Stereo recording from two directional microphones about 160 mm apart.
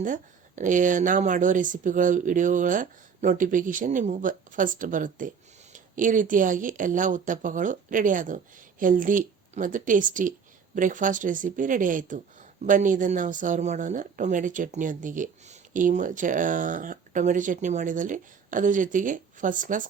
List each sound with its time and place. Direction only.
0.0 s speech: 55° right (ahead or behind)